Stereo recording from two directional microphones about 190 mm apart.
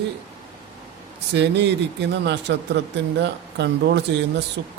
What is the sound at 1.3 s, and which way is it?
Speech, 65° right (ahead or behind).